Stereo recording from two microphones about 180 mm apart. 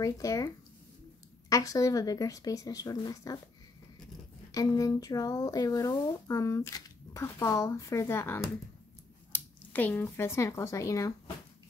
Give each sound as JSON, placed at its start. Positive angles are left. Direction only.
{"t": 0.0, "sound": "speech", "side_deg": 20}
{"t": 4.5, "sound": "speech", "side_deg": 20}